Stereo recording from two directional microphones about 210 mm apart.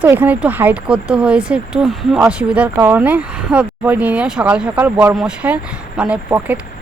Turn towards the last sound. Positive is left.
turn(degrees=-10)  # may be behind; listen again after turning